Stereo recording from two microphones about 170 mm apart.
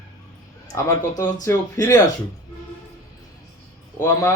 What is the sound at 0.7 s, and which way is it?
A man's voice, 20° left (ahead or behind).